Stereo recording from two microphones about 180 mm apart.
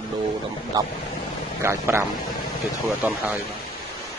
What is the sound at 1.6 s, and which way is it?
Speech, 15° right (ahead or behind).